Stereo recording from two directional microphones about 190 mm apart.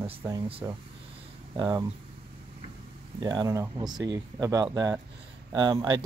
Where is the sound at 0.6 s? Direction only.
15° right (ahead or behind).